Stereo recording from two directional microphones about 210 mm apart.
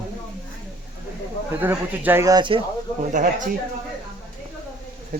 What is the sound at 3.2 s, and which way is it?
Speech, 35° right (ahead or behind).